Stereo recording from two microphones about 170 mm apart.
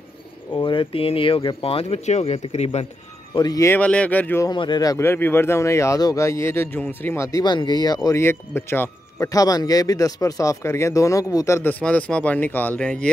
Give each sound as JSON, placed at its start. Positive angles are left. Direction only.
{"t": 0.6, "sound": "speech", "side_deg": 30}
{"t": 3.3, "sound": "speech", "side_deg": 20}
{"t": 4.5, "sound": "speech", "side_deg": 25}